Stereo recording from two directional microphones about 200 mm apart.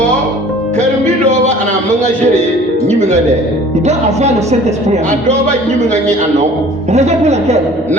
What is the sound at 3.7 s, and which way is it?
A man's voice, 35° right (ahead or behind).